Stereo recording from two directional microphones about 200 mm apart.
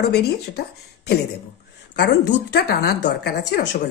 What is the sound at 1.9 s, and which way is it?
A woman's voice, 55° left (ahead or behind).